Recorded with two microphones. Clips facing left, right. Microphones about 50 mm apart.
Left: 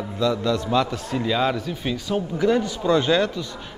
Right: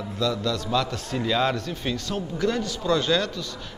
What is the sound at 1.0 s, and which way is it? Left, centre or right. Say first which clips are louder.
Speech: left 2 dB; centre.